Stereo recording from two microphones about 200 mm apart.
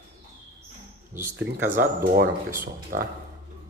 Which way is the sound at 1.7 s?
45° right (ahead or behind).